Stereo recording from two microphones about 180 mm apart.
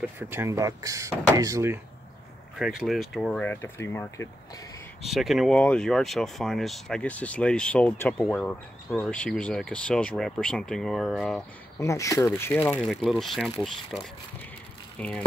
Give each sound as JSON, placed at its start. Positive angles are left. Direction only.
{"t": 0.2, "sound": "speech", "side_deg": -15}
{"t": 2.6, "sound": "speech", "side_deg": -5}
{"t": 5.0, "sound": "speech", "side_deg": 0}
{"t": 11.8, "sound": "speech", "side_deg": 15}
{"t": 12.8, "sound": "speech", "side_deg": 0}